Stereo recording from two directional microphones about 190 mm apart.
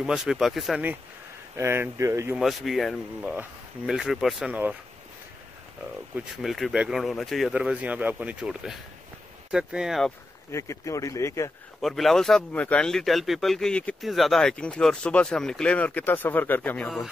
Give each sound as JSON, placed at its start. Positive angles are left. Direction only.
{"t": 0.0, "sound": "speech", "side_deg": -5}
{"t": 2.3, "sound": "speech", "side_deg": 0}
{"t": 6.1, "sound": "speech", "side_deg": 0}
{"t": 10.5, "sound": "speech", "side_deg": 15}
{"t": 11.8, "sound": "speech", "side_deg": 0}